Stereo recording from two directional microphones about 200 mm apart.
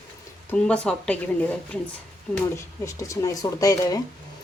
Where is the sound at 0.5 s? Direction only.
5° left (ahead or behind).